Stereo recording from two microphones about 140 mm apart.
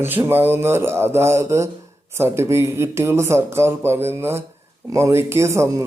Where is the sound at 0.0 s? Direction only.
15° right (ahead or behind).